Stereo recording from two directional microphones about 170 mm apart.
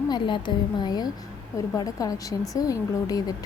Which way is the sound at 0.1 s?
25° left (ahead or behind).